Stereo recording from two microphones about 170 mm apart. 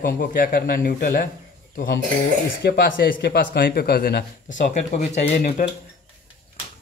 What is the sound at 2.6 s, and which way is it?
Speech, 65° left (ahead or behind).